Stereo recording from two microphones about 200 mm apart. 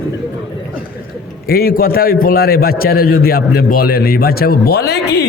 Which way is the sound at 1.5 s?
50° left (ahead or behind).